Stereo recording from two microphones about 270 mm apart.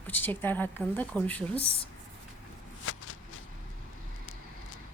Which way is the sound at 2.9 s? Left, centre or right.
Left.